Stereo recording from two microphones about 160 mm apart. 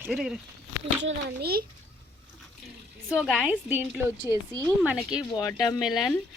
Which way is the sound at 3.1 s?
5° right (ahead or behind).